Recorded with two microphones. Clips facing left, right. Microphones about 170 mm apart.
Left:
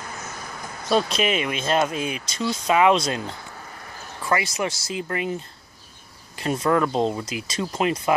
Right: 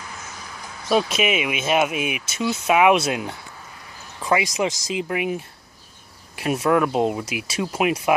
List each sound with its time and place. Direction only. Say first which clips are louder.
0.8 s speech: right 1 dB; 5° right (ahead or behind)